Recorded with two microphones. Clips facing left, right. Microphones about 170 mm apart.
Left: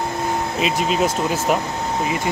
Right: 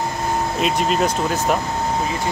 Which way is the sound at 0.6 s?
Centre (ahead or behind).